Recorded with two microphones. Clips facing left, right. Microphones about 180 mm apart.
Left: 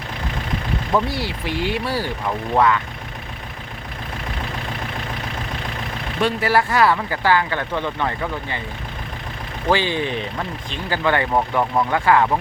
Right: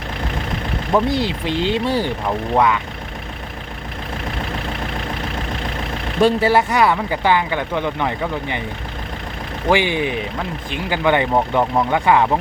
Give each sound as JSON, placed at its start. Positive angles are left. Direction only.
{"t": 0.9, "sound": "speech", "side_deg": -20}
{"t": 6.2, "sound": "speech", "side_deg": -25}
{"t": 9.6, "sound": "speech", "side_deg": -15}